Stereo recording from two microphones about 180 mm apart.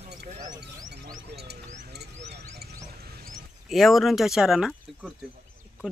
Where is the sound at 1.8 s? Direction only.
65° right (ahead or behind).